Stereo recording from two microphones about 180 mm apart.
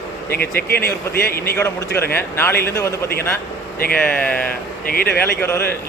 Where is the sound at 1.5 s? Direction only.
15° left (ahead or behind).